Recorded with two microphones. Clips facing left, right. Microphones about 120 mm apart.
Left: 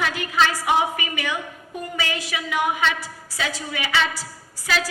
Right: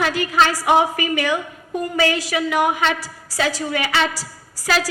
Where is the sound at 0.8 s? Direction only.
40° right (ahead or behind).